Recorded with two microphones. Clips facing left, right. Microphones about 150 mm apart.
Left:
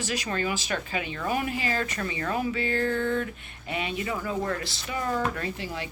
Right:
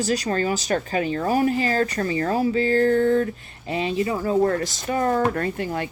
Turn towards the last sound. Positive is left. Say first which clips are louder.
# right 8 dB
turn(degrees=-50)  # may be behind; listen again after turning